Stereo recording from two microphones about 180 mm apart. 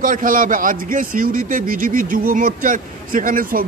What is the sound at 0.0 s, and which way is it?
Speech, 50° right (ahead or behind).